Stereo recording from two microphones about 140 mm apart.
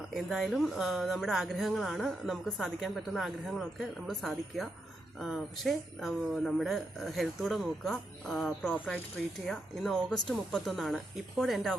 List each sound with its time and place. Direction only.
0.1 s speech: centre (ahead or behind)